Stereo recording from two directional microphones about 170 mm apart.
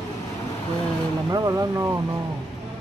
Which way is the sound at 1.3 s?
20° right (ahead or behind).